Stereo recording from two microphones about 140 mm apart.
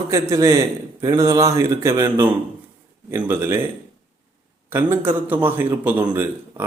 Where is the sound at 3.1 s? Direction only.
15° right (ahead or behind).